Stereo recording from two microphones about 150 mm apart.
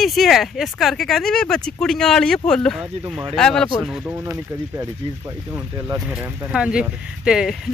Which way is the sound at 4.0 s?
15° right (ahead or behind).